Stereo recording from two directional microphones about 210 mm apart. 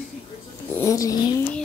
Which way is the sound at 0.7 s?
15° left (ahead or behind).